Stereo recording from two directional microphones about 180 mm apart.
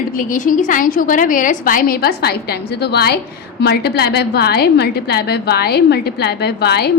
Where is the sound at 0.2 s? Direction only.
45° left (ahead or behind).